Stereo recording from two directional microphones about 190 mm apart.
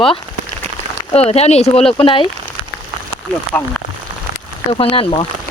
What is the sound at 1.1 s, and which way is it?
Speech, 35° left (ahead or behind).